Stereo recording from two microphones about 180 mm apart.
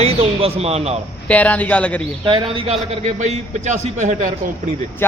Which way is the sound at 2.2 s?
25° right (ahead or behind).